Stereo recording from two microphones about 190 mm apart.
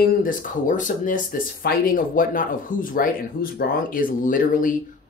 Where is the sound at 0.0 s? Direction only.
50° left (ahead or behind).